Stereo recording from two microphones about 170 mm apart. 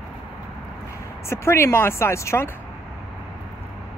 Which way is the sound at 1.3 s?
15° left (ahead or behind).